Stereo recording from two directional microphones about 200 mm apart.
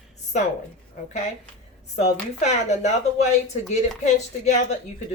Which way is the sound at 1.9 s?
35° left (ahead or behind).